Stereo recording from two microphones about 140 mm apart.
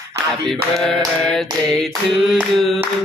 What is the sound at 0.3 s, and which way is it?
Singing, 5° left (ahead or behind).